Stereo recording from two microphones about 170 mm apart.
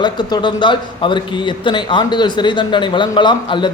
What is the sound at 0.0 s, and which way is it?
Speech, 25° left (ahead or behind).